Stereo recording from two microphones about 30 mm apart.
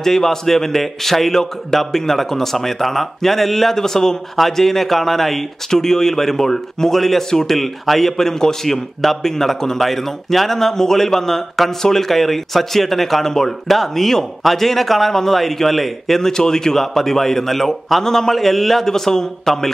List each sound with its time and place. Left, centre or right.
0.0 s speech: centre
7.2 s speech: centre
7.5 s speech: centre
9.0 s speech: centre
16.2 s speech: centre